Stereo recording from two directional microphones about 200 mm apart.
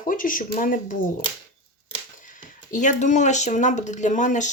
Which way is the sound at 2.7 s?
40° left (ahead or behind).